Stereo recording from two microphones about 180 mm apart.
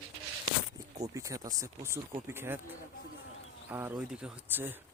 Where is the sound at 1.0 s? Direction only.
20° right (ahead or behind).